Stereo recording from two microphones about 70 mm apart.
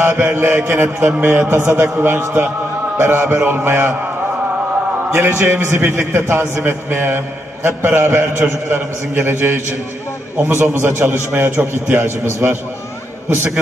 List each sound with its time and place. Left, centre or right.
0.0 s a man's voice: right
5.1 s a man's voice: right